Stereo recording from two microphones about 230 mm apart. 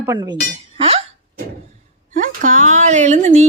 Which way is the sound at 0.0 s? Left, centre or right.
Centre.